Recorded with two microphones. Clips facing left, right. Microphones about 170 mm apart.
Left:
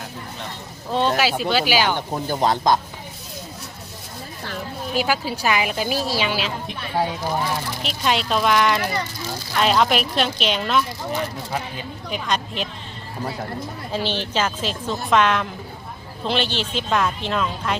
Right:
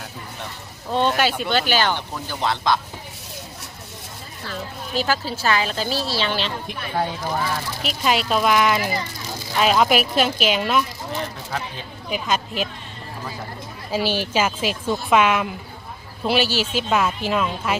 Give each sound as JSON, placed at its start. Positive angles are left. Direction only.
{"t": 0.9, "sound": "a woman's voice", "side_deg": 0}
{"t": 2.0, "sound": "speech", "side_deg": 40}
{"t": 4.9, "sound": "a woman's voice", "side_deg": 10}
{"t": 7.9, "sound": "a woman's voice", "side_deg": -5}
{"t": 12.1, "sound": "speech", "side_deg": -5}
{"t": 13.9, "sound": "speech", "side_deg": -10}